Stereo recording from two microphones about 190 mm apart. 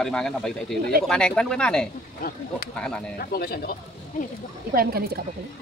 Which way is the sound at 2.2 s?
50° left (ahead or behind).